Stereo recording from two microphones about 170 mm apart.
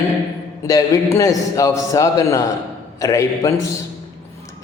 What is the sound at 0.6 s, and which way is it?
A man's voice, 20° left (ahead or behind).